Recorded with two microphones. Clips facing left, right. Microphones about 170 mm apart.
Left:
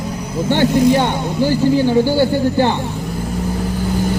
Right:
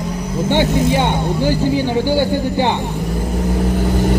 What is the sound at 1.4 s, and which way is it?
A man's voice, 15° right (ahead or behind).